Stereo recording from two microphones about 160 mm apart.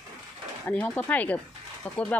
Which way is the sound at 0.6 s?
10° left (ahead or behind).